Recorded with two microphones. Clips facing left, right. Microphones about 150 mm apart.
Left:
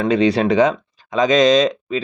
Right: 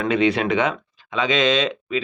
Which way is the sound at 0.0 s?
35° left (ahead or behind).